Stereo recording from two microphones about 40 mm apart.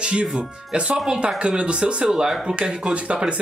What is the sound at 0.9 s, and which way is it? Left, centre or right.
Speech, centre.